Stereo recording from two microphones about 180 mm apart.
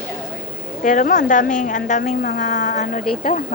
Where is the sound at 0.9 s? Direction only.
45° left (ahead or behind).